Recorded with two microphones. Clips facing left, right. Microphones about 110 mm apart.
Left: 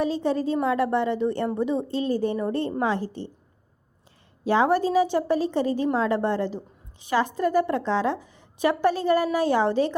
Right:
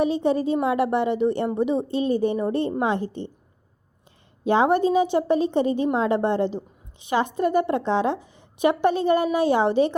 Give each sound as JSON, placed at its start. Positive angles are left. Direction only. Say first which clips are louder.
{"t": 0.0, "sound": "a woman's voice", "louder": "right 3 dB", "side_deg": -20}
{"t": 4.4, "sound": "a woman's voice", "louder": "right 2 dB", "side_deg": -20}